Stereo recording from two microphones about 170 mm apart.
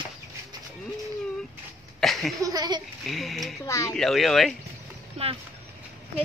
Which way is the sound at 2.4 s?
25° right (ahead or behind).